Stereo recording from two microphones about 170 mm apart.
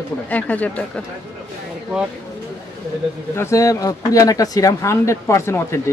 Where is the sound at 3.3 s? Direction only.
15° left (ahead or behind).